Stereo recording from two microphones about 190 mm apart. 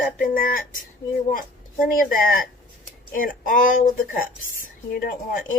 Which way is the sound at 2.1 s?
45° left (ahead or behind).